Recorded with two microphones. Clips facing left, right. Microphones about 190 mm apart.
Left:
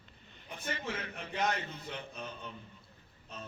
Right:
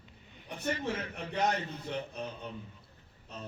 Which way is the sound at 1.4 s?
40° right (ahead or behind).